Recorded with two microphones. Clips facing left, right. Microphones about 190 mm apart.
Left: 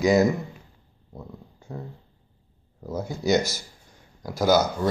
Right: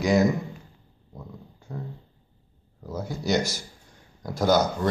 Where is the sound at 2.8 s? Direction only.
10° left (ahead or behind).